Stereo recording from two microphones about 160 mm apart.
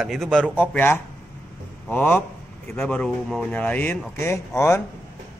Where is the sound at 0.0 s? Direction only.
Centre (ahead or behind); by 4.8 s 15° left (ahead or behind).